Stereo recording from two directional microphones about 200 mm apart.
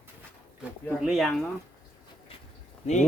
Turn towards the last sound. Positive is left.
turn(degrees=35)  # may be behind; listen again after turning